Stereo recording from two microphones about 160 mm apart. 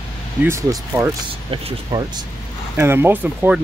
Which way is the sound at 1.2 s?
30° right (ahead or behind).